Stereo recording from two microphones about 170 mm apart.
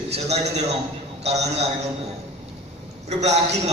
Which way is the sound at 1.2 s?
40° right (ahead or behind).